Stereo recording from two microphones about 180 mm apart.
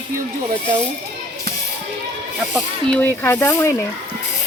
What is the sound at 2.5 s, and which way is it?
Speech, 5° left (ahead or behind).